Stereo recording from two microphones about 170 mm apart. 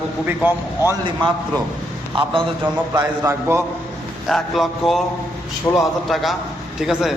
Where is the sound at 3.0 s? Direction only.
15° right (ahead or behind).